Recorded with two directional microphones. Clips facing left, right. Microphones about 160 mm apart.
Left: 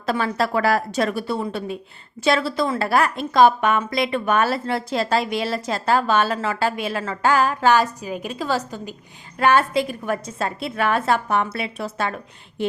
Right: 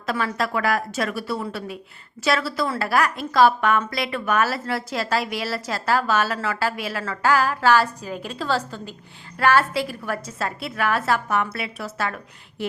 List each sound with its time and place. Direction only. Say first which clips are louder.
0.0 s a woman's voice: left 3 dB; 30° left (ahead or behind)